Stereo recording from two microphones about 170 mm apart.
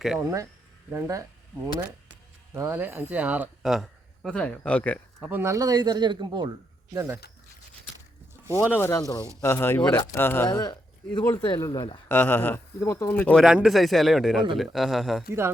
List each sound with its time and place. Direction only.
0.2 s speech: 20° right (ahead or behind)
2.6 s speech: 15° right (ahead or behind); by 4.9 s 10° left (ahead or behind)
5.2 s speech: 15° right (ahead or behind)
6.9 s speech: 15° right (ahead or behind)
8.7 s speech: 15° left (ahead or behind)
12.0 s speech: 10° left (ahead or behind)
13.4 s speech: 5° right (ahead or behind)